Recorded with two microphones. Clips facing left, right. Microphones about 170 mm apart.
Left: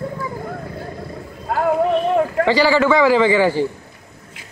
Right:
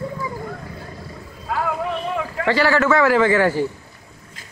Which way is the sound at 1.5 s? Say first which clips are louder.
Left 7 dB; 45° left (ahead or behind).